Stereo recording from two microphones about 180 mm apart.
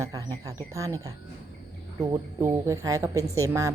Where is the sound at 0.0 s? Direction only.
15° right (ahead or behind).